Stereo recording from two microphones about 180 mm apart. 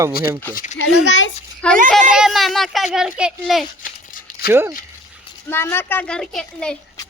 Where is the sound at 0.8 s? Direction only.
90° left.